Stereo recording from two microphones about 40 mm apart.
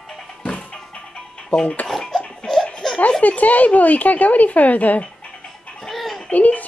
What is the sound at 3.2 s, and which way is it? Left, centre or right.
Speech, left.